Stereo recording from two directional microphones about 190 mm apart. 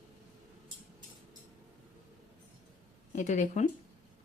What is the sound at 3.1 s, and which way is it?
Speech, 40° left (ahead or behind).